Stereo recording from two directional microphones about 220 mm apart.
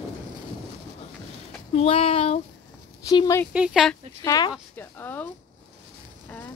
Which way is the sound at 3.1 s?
15° left (ahead or behind).